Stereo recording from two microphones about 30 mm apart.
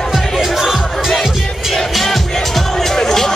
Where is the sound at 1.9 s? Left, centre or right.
Centre.